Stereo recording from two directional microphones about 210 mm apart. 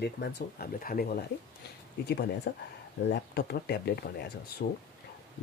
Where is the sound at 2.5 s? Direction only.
50° left (ahead or behind).